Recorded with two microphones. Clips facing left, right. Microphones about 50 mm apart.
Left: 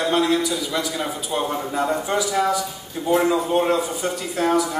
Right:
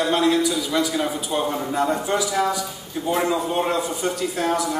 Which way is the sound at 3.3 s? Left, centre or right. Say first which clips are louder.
Left 3 dB; centre.